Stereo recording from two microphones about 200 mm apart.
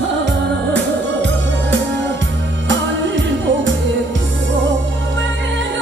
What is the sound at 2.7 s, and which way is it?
Music, 65° right (ahead or behind).